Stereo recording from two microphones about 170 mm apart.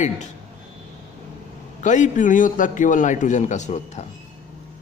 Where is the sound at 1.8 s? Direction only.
45° left (ahead or behind).